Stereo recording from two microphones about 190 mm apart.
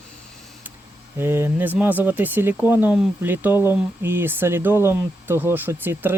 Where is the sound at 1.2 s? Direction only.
10° right (ahead or behind).